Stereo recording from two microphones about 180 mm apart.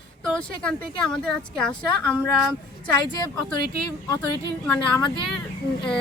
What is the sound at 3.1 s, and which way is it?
Speech, 20° left (ahead or behind).